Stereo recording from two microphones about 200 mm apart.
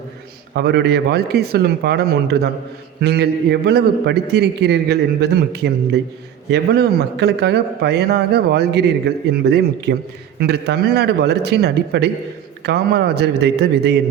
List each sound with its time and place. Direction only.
0.5 s a man's voice: 55° right (ahead or behind)